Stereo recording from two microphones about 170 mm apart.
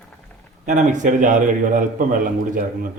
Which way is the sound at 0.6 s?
45° right (ahead or behind).